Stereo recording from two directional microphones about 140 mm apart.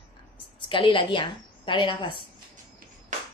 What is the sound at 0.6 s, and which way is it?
A woman's voice, 35° left (ahead or behind).